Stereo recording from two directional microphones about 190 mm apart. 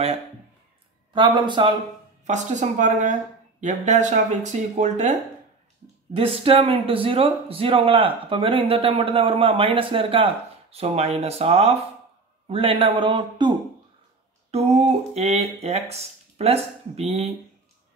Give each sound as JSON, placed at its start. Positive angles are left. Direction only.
{"t": 1.1, "sound": "speech", "side_deg": -25}
{"t": 2.2, "sound": "speech", "side_deg": -40}
{"t": 6.1, "sound": "speech", "side_deg": -30}
{"t": 14.5, "sound": "speech", "side_deg": -35}